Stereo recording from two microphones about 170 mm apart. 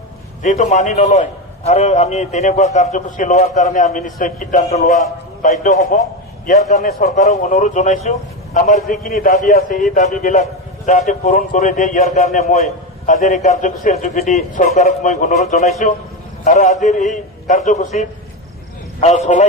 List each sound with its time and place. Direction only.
0.4 s a man's voice: 40° left (ahead or behind)